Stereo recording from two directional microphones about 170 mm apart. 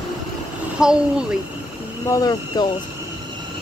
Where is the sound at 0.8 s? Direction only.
5° right (ahead or behind).